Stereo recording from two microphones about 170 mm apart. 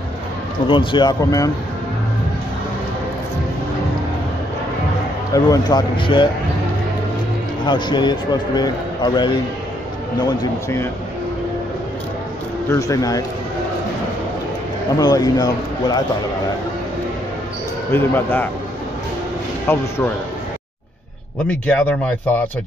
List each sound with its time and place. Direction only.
0.7 s a man's voice: 25° left (ahead or behind)
5.3 s a man's voice: 20° left (ahead or behind)
7.6 s a man's voice: 25° left (ahead or behind)
10.2 s speech: 15° left (ahead or behind)
12.6 s a man's voice: 20° left (ahead or behind)
15.0 s a man's voice: 20° left (ahead or behind)
17.9 s speech: 10° left (ahead or behind)
19.7 s speech: 15° left (ahead or behind)
21.5 s speech: 10° left (ahead or behind)